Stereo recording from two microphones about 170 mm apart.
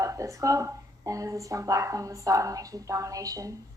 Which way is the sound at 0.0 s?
20° right (ahead or behind).